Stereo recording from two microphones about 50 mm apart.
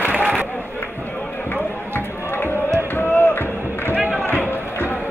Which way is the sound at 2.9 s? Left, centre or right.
Left.